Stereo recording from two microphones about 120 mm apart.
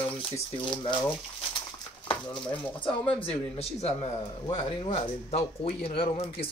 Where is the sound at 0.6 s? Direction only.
45° left (ahead or behind).